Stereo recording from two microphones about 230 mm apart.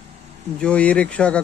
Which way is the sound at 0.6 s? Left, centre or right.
Centre.